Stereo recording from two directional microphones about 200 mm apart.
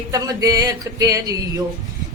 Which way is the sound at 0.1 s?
20° right (ahead or behind).